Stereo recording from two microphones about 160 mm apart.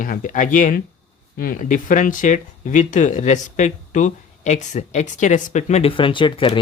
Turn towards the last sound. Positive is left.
turn(degrees=35)  # may be behind; listen again after turning